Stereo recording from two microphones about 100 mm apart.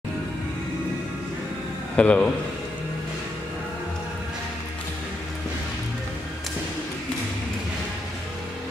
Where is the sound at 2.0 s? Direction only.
10° left (ahead or behind).